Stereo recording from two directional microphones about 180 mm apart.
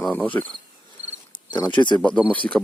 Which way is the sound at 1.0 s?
35° right (ahead or behind).